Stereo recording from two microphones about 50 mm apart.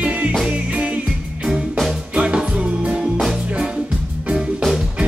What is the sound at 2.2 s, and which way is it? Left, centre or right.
Music, right.